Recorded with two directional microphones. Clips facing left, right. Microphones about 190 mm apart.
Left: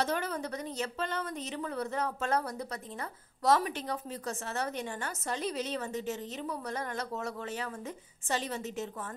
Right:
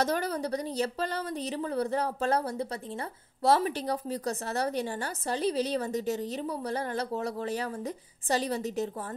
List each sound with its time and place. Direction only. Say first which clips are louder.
0.0 s a woman's voice: right 4 dB; 40° right (ahead or behind)